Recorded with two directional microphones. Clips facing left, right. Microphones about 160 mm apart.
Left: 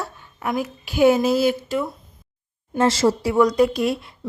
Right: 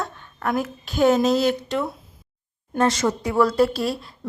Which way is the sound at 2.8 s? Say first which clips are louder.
Left 3 dB; 30° left (ahead or behind).